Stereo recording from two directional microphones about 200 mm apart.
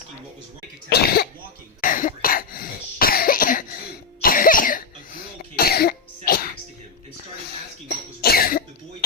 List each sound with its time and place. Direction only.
0.9 s cough: 50° left (ahead or behind)
8.2 s cough: 50° left (ahead or behind)